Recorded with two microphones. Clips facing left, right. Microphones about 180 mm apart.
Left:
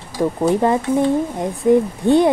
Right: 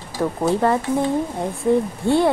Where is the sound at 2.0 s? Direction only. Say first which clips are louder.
Left 3 dB; 20° left (ahead or behind).